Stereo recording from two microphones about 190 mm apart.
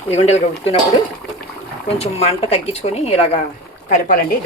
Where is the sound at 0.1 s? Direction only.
35° left (ahead or behind).